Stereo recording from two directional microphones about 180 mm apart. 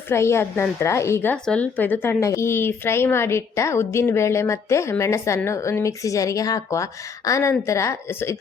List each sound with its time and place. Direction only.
0.1 s a woman's voice: 15° left (ahead or behind)